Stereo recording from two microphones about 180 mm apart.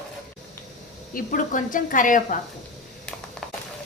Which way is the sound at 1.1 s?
45° left (ahead or behind).